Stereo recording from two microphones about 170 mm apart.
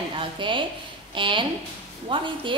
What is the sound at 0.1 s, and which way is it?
A woman's voice, 30° right (ahead or behind).